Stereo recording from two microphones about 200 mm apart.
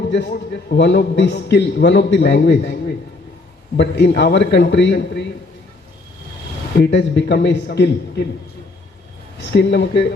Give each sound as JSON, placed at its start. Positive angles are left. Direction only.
{"t": 0.1, "sound": "a man's voice", "side_deg": 60}
{"t": 3.8, "sound": "a man's voice", "side_deg": 60}
{"t": 6.7, "sound": "a man's voice", "side_deg": 60}
{"t": 9.4, "sound": "a man's voice", "side_deg": 60}